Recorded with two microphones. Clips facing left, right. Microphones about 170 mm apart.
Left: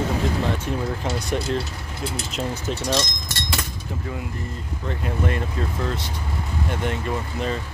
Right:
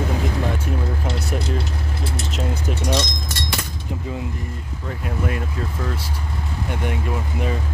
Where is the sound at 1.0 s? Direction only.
5° right (ahead or behind).